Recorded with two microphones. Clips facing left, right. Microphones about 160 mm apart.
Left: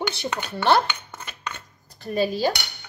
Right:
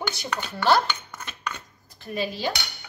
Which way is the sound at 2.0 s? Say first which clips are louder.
Left 6 dB; 40° left (ahead or behind).